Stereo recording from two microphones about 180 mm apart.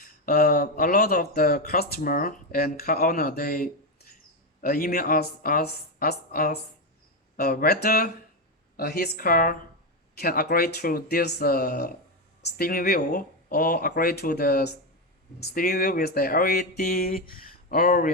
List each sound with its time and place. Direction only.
0.3 s speech: 55° left (ahead or behind)